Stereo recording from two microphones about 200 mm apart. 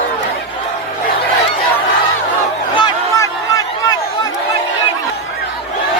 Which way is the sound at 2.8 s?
15° left (ahead or behind).